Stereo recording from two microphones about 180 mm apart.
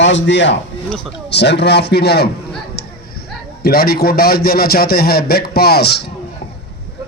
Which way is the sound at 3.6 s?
55° left (ahead or behind).